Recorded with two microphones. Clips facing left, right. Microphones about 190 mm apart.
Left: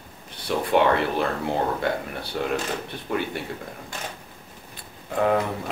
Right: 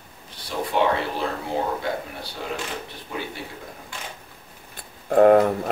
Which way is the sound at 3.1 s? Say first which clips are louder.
Left 6 dB; 60° left (ahead or behind).